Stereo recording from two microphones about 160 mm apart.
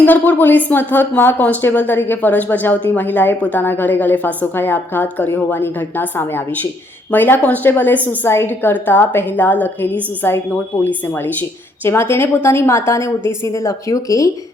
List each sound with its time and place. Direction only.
0.0 s a woman's voice: 10° left (ahead or behind)